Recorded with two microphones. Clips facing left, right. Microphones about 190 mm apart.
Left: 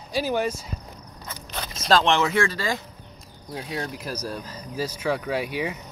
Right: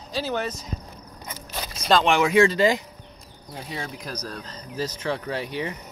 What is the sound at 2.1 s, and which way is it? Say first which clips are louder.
Speech: right 4 dB; 15° right (ahead or behind).